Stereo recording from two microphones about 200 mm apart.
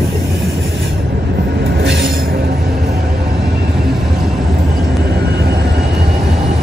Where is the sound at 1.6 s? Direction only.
55° right (ahead or behind).